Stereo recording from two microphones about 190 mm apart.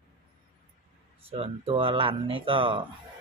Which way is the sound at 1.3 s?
30° right (ahead or behind).